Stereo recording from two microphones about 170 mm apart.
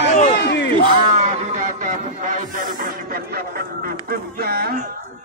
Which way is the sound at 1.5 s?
50° right (ahead or behind).